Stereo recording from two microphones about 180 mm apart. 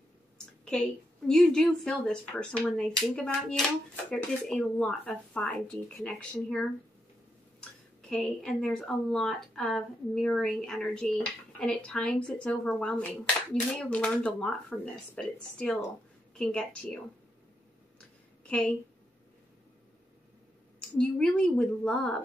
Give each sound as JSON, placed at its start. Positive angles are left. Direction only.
{"t": 0.7, "sound": "a woman's voice", "side_deg": 5}
{"t": 8.1, "sound": "a woman's voice", "side_deg": 5}
{"t": 17.9, "sound": "a sound", "side_deg": 5}
{"t": 21.0, "sound": "a woman's voice", "side_deg": 5}